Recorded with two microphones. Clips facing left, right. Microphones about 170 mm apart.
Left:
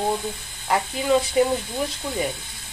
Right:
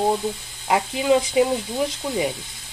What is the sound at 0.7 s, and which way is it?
Speech, 15° right (ahead or behind).